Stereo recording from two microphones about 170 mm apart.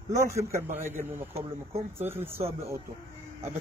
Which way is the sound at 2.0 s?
15° right (ahead or behind).